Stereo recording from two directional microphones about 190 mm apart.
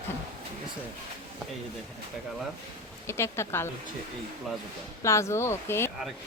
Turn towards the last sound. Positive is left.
turn(degrees=15)  # may be behind; listen again after turning